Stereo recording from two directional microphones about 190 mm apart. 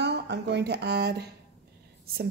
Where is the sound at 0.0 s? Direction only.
60° right (ahead or behind).